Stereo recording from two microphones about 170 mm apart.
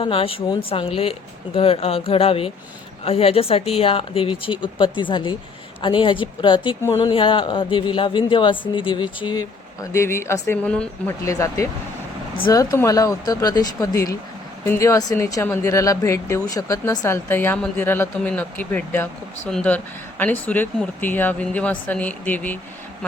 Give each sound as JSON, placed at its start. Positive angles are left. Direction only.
{"t": 0.0, "sound": "speech", "side_deg": 30}
{"t": 7.1, "sound": "speech", "side_deg": 30}
{"t": 11.3, "sound": "speech", "side_deg": 20}